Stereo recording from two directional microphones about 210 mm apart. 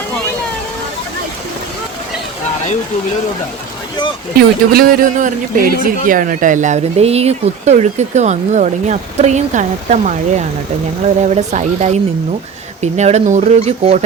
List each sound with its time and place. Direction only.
4.4 s speech: 45° right (ahead or behind); by 14.0 s 30° right (ahead or behind)